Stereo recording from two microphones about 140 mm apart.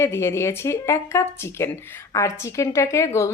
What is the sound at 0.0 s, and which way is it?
Speech, 20° left (ahead or behind).